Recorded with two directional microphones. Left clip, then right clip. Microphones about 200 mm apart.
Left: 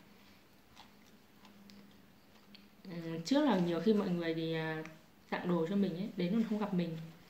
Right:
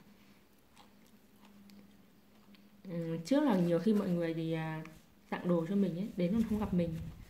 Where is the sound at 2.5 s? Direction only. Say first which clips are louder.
Right 5 dB; 40° right (ahead or behind).